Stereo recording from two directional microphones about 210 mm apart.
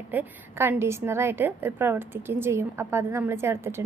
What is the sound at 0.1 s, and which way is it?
A woman's voice, 10° right (ahead or behind).